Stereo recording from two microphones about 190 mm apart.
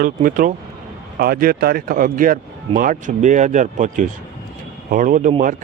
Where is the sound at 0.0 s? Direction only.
45° right (ahead or behind).